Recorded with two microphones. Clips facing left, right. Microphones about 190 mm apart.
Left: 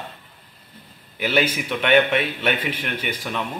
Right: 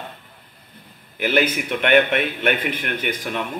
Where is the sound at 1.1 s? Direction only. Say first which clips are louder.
Right 2 dB; 50° right (ahead or behind).